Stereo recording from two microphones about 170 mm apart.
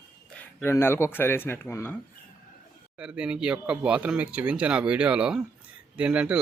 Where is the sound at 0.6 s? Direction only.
15° left (ahead or behind).